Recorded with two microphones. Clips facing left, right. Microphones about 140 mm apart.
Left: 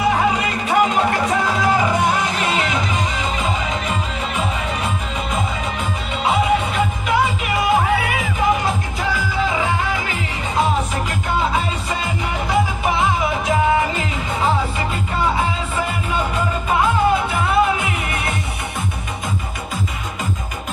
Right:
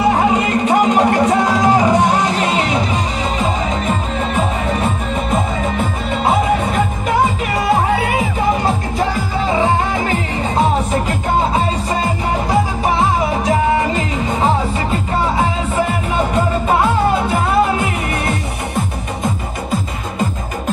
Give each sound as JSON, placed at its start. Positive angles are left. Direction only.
{"t": 0.0, "sound": "music", "side_deg": -35}
{"t": 16.3, "sound": "music", "side_deg": -35}